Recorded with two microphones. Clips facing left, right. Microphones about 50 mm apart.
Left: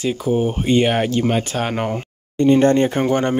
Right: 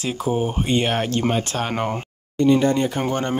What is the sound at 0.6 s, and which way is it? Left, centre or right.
Speech, centre.